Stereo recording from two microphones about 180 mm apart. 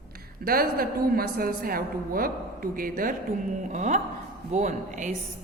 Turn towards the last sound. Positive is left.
turn(degrees=-45)  # may be behind; listen again after turning